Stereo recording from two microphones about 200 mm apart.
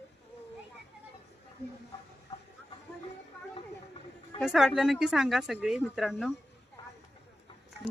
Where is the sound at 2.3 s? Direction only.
20° left (ahead or behind).